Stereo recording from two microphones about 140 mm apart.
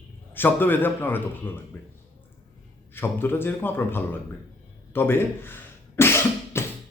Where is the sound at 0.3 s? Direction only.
15° left (ahead or behind).